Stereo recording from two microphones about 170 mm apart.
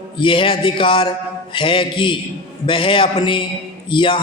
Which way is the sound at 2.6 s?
30° left (ahead or behind).